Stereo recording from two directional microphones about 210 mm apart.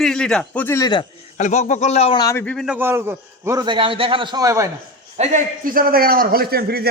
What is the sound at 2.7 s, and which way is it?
A man's voice, 10° right (ahead or behind).